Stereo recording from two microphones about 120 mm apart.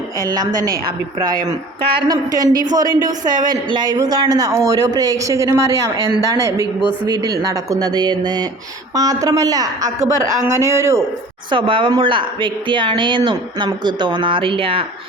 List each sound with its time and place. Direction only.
2.0 s a man's voice: 30° right (ahead or behind)
11.5 s speech: 45° right (ahead or behind)